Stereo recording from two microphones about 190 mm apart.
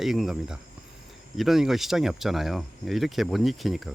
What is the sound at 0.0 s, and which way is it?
Speech, centre (ahead or behind).